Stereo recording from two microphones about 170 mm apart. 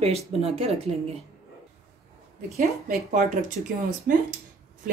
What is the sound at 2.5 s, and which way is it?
Speech, 45° right (ahead or behind).